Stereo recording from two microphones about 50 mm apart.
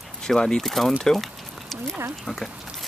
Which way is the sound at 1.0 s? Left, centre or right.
Centre.